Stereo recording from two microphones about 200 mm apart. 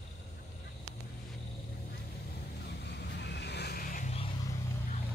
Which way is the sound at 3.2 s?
55° left (ahead or behind).